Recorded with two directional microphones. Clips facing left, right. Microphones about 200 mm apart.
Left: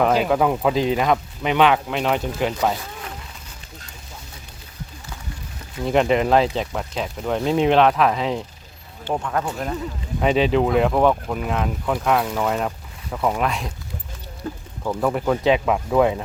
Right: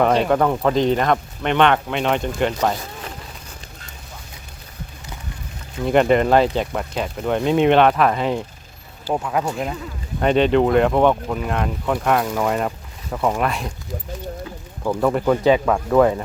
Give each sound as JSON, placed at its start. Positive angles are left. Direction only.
{"t": 0.0, "sound": "speech", "side_deg": 5}
{"t": 5.8, "sound": "speech", "side_deg": 0}
{"t": 10.2, "sound": "speech", "side_deg": 0}
{"t": 14.5, "sound": "a sound", "side_deg": 45}
{"t": 15.0, "sound": "speech", "side_deg": 0}